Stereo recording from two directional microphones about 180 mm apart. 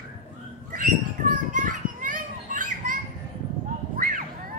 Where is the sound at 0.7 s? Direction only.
45° right (ahead or behind).